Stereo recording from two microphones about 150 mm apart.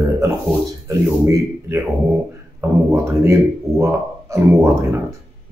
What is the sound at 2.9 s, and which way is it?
Speech, 20° right (ahead or behind).